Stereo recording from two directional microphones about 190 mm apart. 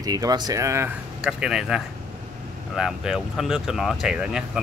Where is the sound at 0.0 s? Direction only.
20° right (ahead or behind).